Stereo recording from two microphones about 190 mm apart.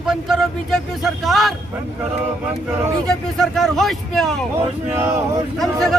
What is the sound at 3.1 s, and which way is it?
Speech, centre (ahead or behind).